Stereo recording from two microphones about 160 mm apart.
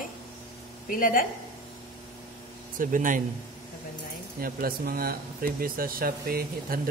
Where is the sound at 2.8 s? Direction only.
55° right (ahead or behind).